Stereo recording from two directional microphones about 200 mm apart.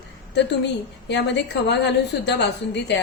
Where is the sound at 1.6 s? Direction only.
60° left (ahead or behind).